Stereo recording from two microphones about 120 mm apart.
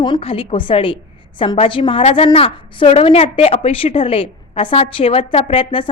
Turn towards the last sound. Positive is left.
turn(degrees=45)  # may be behind; listen again after turning